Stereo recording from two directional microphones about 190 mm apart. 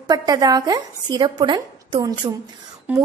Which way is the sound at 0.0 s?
20° right (ahead or behind).